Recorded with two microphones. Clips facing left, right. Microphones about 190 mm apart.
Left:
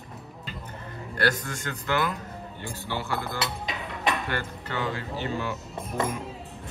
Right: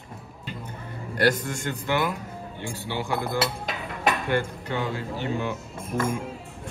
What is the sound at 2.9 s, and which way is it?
Speech, 15° right (ahead or behind).